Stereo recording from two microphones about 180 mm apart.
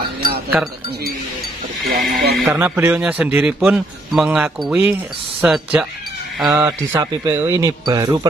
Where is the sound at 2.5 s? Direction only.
10° right (ahead or behind).